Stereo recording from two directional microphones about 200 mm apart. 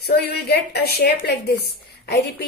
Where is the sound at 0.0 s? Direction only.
50° left (ahead or behind).